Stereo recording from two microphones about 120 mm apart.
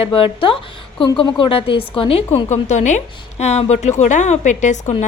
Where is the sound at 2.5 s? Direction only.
80° left.